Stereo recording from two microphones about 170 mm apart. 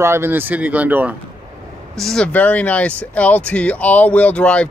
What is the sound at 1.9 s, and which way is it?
Speech, 5° left (ahead or behind).